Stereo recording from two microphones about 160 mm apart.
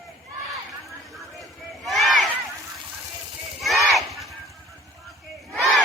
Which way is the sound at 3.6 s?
Centre (ahead or behind).